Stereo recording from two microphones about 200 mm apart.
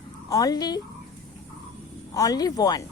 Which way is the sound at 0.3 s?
20° left (ahead or behind).